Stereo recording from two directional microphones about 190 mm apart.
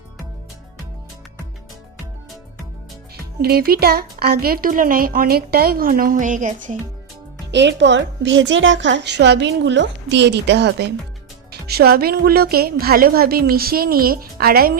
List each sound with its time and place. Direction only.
3.4 s speech: 55° right (ahead or behind)
7.5 s a woman's voice: 65° right (ahead or behind)